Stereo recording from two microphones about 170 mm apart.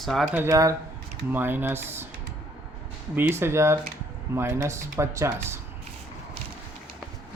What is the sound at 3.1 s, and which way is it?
Speech, 15° right (ahead or behind).